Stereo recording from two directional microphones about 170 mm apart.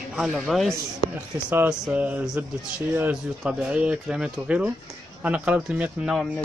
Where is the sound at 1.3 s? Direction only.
10° right (ahead or behind).